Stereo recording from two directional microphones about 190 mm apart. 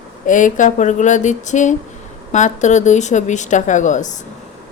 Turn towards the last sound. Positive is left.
turn(degrees=40)  # may be behind; listen again after turning